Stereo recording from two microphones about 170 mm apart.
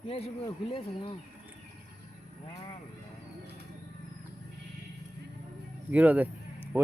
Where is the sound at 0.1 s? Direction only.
35° left (ahead or behind).